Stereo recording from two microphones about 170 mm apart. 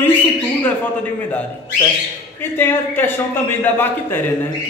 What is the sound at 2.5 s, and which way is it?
A man's voice, 10° left (ahead or behind).